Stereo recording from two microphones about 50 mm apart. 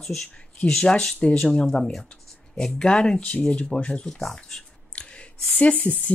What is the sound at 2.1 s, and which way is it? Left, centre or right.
Speech, centre.